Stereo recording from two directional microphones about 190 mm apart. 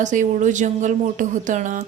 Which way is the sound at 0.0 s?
40° right (ahead or behind).